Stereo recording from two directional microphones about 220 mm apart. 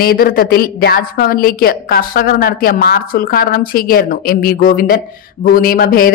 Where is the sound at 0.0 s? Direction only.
45° left (ahead or behind).